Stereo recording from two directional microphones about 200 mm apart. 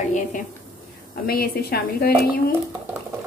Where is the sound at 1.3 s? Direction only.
50° left (ahead or behind).